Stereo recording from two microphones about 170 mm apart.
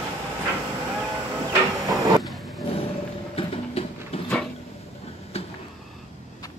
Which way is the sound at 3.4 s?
35° left (ahead or behind).